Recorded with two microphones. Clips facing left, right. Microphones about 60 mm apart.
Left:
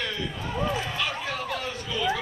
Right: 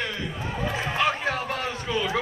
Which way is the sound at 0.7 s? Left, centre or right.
Right.